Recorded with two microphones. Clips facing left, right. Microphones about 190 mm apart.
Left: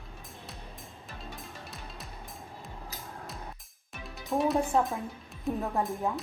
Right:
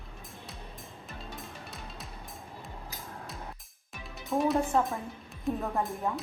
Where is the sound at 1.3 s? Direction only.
Centre (ahead or behind).